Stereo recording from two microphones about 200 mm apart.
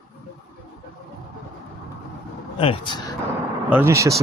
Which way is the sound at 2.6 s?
25° left (ahead or behind).